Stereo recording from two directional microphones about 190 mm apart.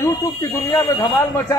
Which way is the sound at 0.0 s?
15° left (ahead or behind).